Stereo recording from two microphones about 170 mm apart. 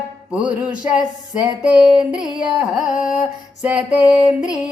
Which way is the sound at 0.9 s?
5° right (ahead or behind).